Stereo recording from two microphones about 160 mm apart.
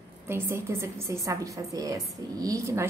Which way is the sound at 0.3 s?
15° right (ahead or behind).